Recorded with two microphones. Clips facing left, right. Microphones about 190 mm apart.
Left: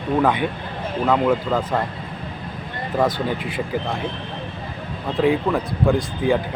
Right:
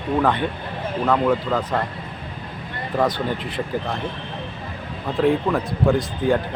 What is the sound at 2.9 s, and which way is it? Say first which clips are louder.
Speech: left 1 dB; 5° left (ahead or behind).